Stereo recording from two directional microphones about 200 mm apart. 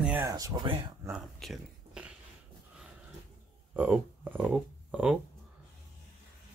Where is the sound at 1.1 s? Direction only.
Centre (ahead or behind).